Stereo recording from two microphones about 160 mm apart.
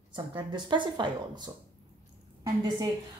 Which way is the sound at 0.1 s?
30° right (ahead or behind).